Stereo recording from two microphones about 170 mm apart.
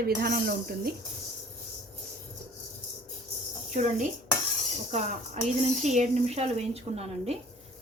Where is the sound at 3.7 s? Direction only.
45° right (ahead or behind).